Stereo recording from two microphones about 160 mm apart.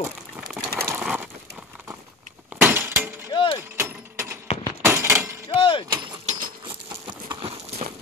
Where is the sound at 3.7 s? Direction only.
15° right (ahead or behind).